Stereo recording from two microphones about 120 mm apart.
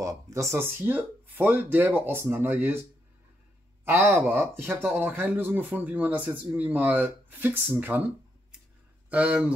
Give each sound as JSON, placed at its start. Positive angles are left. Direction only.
{"t": 0.0, "sound": "speech", "side_deg": -25}
{"t": 3.8, "sound": "speech", "side_deg": -20}
{"t": 9.1, "sound": "speech", "side_deg": -10}